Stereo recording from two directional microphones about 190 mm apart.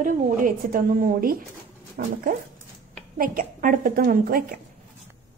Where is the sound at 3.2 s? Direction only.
45° right (ahead or behind).